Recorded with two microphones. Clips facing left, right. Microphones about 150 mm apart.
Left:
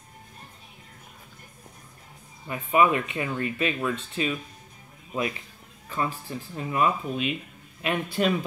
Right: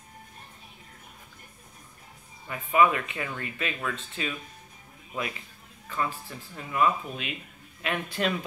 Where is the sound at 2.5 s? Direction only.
25° left (ahead or behind).